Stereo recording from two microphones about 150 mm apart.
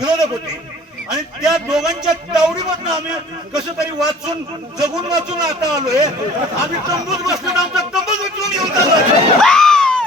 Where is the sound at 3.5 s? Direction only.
5° right (ahead or behind).